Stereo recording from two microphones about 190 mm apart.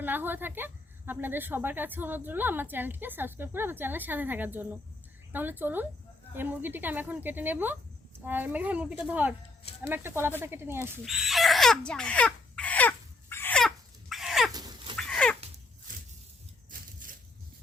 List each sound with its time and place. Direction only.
0.0 s a woman's voice: 10° right (ahead or behind)
11.0 s speech: centre (ahead or behind)
13.3 s a sound: 10° left (ahead or behind)
14.5 s dog: 20° right (ahead or behind)
14.9 s cat: 5° left (ahead or behind)
17.0 s a sound: 45° right (ahead or behind)